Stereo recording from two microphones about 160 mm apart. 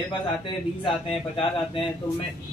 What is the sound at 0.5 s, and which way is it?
Speech, 30° left (ahead or behind).